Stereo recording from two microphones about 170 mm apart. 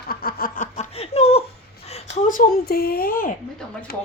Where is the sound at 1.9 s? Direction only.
50° left (ahead or behind).